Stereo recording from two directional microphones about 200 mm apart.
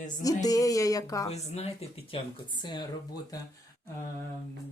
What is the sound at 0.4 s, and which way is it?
Speech, 15° left (ahead or behind).